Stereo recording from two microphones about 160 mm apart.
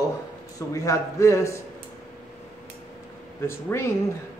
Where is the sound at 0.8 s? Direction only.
20° left (ahead or behind).